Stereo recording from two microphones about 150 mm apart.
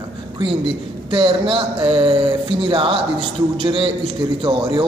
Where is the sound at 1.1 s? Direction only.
35° right (ahead or behind).